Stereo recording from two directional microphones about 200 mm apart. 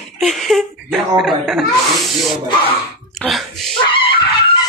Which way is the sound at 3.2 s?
Centre (ahead or behind).